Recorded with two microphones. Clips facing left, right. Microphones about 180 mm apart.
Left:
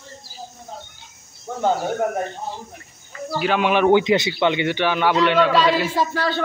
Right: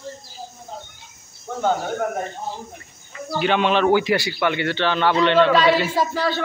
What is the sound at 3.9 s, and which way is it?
A man's voice, 20° left (ahead or behind).